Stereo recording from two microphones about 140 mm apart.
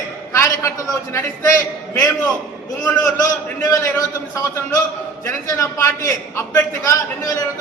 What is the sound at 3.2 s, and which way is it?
A man's voice, 25° left (ahead or behind).